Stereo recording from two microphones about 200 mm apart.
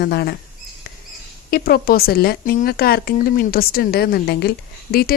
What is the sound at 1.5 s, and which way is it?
Speech, 50° left (ahead or behind).